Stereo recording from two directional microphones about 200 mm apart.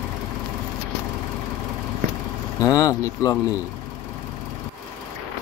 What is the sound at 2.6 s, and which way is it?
Speech, 20° left (ahead or behind).